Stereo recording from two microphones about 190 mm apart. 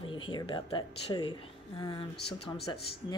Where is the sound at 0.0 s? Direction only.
25° left (ahead or behind).